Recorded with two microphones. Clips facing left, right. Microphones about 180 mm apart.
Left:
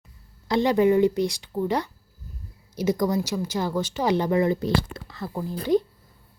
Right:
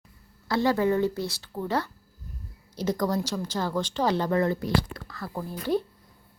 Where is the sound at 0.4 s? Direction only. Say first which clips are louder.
Left 4 dB; 20° left (ahead or behind).